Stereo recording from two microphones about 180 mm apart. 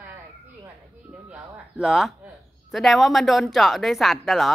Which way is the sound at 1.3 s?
5° right (ahead or behind).